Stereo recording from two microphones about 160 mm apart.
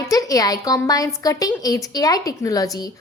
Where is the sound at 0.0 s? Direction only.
20° left (ahead or behind).